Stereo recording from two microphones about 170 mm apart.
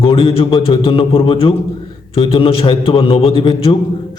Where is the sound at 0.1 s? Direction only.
30° left (ahead or behind).